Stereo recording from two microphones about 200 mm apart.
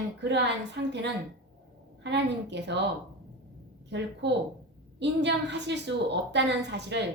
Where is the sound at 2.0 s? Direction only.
60° right (ahead or behind).